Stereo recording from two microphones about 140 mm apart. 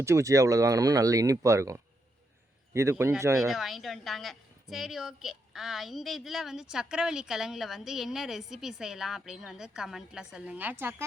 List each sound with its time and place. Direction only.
0.0 s speech: 20° right (ahead or behind)
3.3 s a woman's voice: centre (ahead or behind)